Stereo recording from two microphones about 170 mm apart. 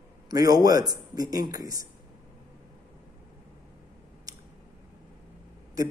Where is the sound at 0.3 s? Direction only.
20° right (ahead or behind).